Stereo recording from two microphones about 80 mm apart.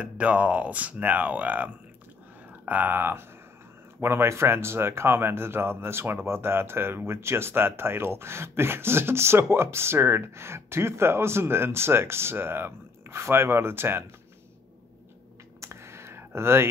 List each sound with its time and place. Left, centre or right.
0.0 s speech: centre
15.6 s clicking: right